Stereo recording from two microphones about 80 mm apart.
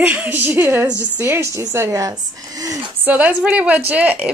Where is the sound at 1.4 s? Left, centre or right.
Right.